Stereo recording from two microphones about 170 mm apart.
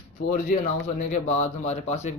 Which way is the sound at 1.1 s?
40° left (ahead or behind).